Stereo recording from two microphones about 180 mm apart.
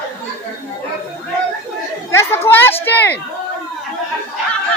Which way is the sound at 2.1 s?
15° left (ahead or behind).